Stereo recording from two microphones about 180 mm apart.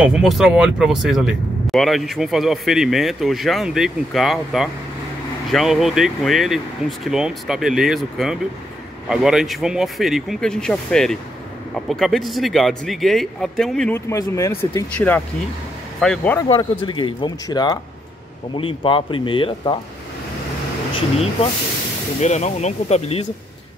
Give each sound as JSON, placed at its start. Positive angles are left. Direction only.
{"t": 0.0, "sound": "speech", "side_deg": -5}
{"t": 16.4, "sound": "speech", "side_deg": 25}
{"t": 22.2, "sound": "speech", "side_deg": 40}